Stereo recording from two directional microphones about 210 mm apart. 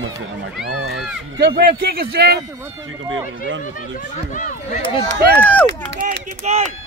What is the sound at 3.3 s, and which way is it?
Speech, 60° right (ahead or behind).